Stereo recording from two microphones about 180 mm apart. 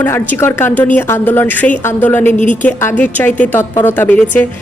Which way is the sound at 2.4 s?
45° left (ahead or behind).